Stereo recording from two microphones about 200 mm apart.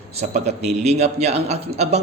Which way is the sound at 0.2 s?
35° right (ahead or behind).